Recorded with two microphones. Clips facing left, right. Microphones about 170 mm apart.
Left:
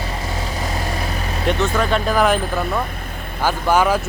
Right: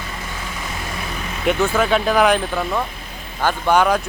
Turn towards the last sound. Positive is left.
turn(degrees=5)  # may be behind; listen again after turning